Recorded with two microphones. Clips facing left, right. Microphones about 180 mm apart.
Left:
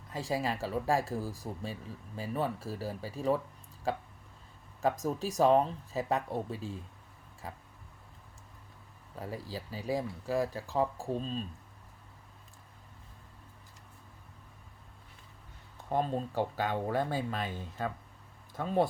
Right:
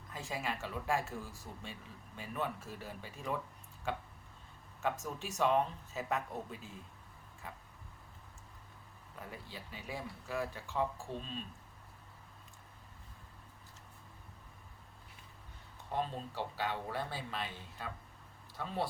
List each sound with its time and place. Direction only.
0.1 s speech: 35° left (ahead or behind)
9.1 s speech: 35° left (ahead or behind)
15.9 s speech: 45° left (ahead or behind)